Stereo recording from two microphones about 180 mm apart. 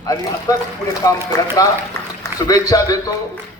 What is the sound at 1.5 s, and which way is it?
A man's voice, 15° left (ahead or behind).